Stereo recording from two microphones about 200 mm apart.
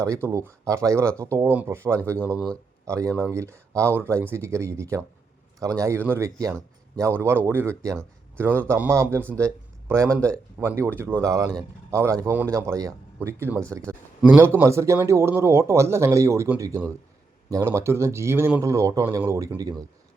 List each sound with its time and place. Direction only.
0.0 s a man's voice: 15° right (ahead or behind)
10.2 s speech: 5° left (ahead or behind)
10.6 s a man's voice: 10° right (ahead or behind)